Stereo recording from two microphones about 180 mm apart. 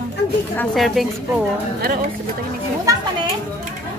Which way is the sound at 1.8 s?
55° right (ahead or behind).